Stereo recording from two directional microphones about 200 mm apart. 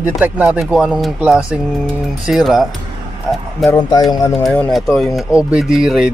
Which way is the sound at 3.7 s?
20° left (ahead or behind).